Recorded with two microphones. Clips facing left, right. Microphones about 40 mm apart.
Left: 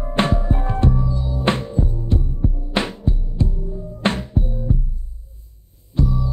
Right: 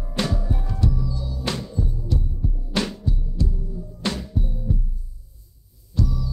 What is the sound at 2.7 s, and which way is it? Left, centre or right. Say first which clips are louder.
Music: left 2 dB; left.